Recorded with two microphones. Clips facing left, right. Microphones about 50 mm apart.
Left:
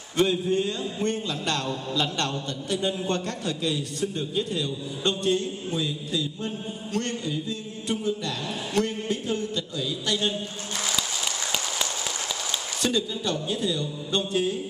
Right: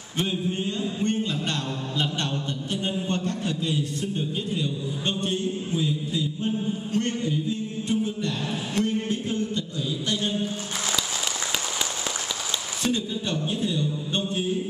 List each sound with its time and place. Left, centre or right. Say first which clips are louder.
0.2 s a man's voice: left 4 dB; left
1.0 s a sound: even; left
12.8 s a man's voice: left 1 dB; left